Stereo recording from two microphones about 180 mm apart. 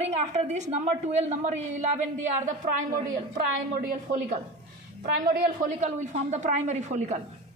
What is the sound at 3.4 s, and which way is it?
A woman's voice, 45° right (ahead or behind).